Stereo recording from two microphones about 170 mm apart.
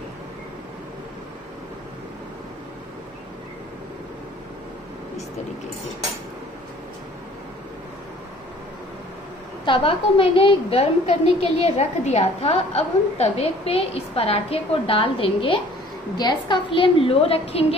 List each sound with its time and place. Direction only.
9.7 s a woman's voice: 30° left (ahead or behind)